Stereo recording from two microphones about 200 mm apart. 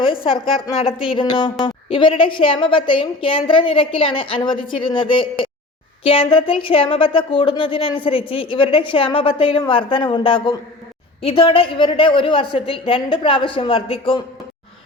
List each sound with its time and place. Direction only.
0.0 s speech: 25° left (ahead or behind)